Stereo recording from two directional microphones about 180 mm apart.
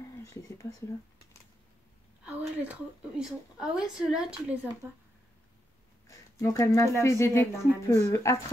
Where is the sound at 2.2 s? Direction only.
10° right (ahead or behind).